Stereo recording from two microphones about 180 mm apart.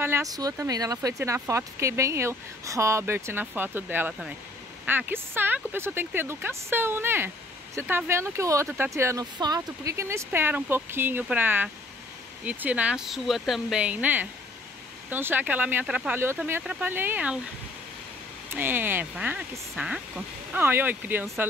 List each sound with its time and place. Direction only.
0.0 s speech: 15° right (ahead or behind)
18.5 s speech: 10° right (ahead or behind)